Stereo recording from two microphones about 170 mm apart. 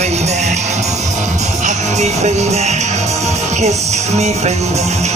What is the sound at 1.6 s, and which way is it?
Music, 40° right (ahead or behind).